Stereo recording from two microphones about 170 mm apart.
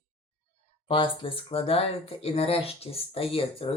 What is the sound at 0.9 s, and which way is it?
Speech, 30° left (ahead or behind).